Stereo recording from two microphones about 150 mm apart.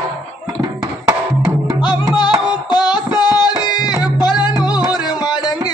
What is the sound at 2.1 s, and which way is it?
Music, 30° left (ahead or behind).